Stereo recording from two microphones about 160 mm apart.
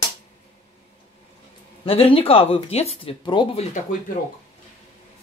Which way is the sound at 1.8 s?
35° left (ahead or behind).